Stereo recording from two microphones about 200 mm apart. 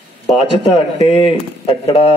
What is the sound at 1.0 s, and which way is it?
Speech, 25° left (ahead or behind).